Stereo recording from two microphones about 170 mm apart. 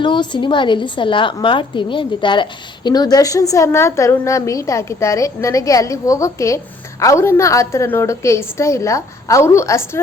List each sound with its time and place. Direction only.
0.0 s a woman's voice: 30° left (ahead or behind)